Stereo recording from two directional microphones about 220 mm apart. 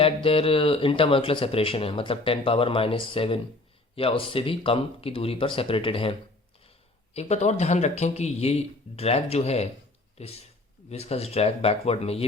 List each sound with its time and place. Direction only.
0.0 s speech: 25° left (ahead or behind)